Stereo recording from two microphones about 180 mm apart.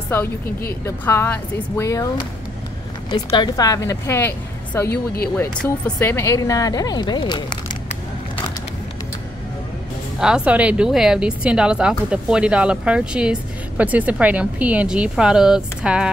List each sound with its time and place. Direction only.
0.8 s speech: 15° left (ahead or behind)
4.8 s speech: 60° left (ahead or behind)
5.4 s speech: 10° left (ahead or behind)
10.2 s speech: 5° right (ahead or behind)